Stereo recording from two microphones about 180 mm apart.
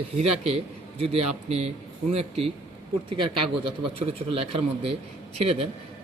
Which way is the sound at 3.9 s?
30° right (ahead or behind).